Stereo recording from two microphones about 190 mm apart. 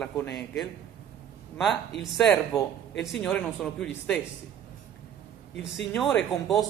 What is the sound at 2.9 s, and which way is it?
Speech, 70° left (ahead or behind).